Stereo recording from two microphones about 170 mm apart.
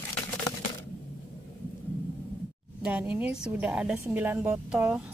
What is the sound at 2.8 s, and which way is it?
A woman's voice, 10° right (ahead or behind).